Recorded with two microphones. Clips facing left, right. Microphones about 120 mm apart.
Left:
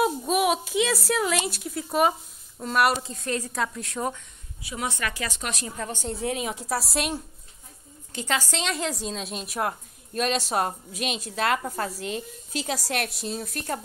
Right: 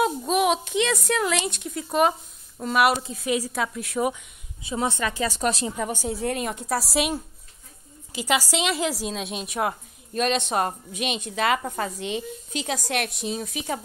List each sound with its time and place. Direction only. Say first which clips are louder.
0.0 s a woman's voice: right 1 dB; centre (ahead or behind)
4.6 s speech: right 5 dB; 25° right (ahead or behind)
5.7 s a woman's voice: right 4 dB; 15° right (ahead or behind)